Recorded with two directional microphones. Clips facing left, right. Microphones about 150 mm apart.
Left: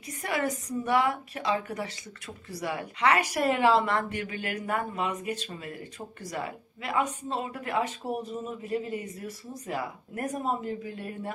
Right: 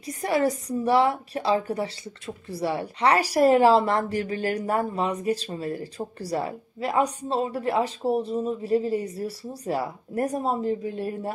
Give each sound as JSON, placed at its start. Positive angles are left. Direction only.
{"t": 0.0, "sound": "a woman's voice", "side_deg": -35}